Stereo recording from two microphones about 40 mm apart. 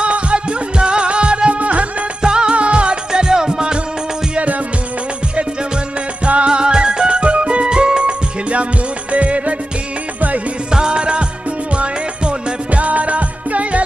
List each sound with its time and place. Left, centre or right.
0.0 s music: right
2.2 s music: right
5.3 s music: right
10.7 s music: right